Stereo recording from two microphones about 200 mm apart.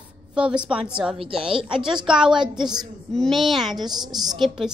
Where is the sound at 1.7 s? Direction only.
5° right (ahead or behind).